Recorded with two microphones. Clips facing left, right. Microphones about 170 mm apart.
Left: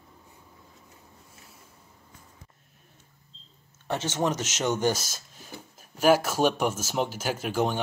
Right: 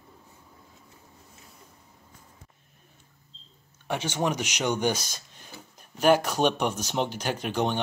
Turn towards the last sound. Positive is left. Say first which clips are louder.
# even
turn(degrees=5)  # may be behind; listen again after turning